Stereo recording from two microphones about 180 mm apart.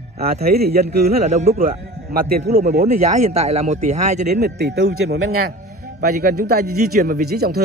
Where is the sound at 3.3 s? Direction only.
35° right (ahead or behind).